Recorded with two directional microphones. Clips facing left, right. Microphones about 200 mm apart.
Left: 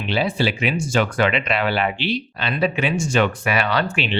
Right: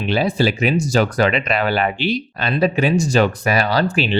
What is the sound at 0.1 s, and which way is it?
Speech, 40° right (ahead or behind).